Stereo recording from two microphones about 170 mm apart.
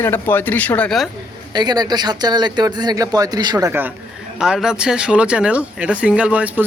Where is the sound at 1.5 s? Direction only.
25° right (ahead or behind).